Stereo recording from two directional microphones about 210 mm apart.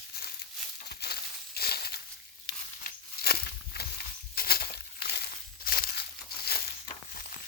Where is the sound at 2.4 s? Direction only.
45° left (ahead or behind).